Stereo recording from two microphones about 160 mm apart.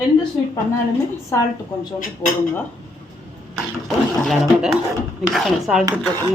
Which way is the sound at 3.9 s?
Centre (ahead or behind).